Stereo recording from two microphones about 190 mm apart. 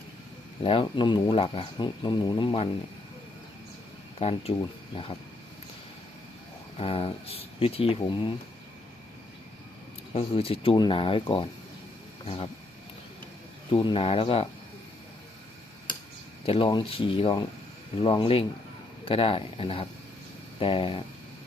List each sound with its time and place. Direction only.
0.6 s speech: 30° left (ahead or behind)
4.2 s speech: 30° left (ahead or behind)
6.7 s speech: 30° left (ahead or behind)
10.2 s speech: 30° left (ahead or behind)
13.7 s speech: 25° left (ahead or behind)
16.5 s speech: 25° left (ahead or behind)